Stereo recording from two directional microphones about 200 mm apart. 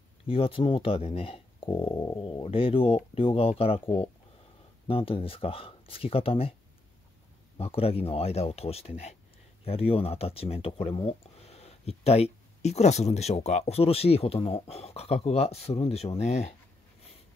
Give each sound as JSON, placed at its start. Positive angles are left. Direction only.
{"t": 0.3, "sound": "speech", "side_deg": 25}
{"t": 7.5, "sound": "speech", "side_deg": 30}